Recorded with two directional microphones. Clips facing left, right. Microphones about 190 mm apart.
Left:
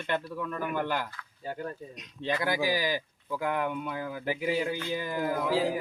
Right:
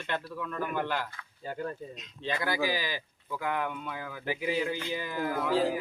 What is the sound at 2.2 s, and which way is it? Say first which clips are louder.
Speech: left 2 dB; 15° left (ahead or behind).